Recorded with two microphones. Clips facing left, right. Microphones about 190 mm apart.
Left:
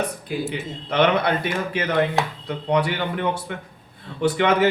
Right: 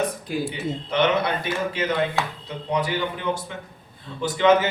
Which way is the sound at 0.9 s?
60° left (ahead or behind).